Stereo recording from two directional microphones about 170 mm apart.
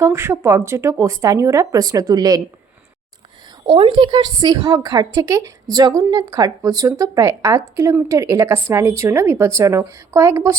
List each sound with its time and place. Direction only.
0.0 s speech: 15° right (ahead or behind)
3.7 s a woman's voice: 30° right (ahead or behind)